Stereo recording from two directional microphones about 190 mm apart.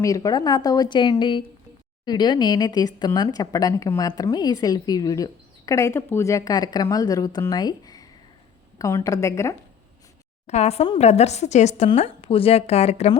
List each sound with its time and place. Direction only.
0.0 s a woman's voice: 20° left (ahead or behind)
10.4 s speech: 35° left (ahead or behind)